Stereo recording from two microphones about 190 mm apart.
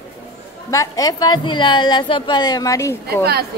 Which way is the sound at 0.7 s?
15° left (ahead or behind).